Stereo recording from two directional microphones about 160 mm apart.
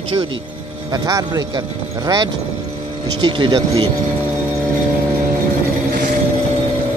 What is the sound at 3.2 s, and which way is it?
Speech, 30° right (ahead or behind).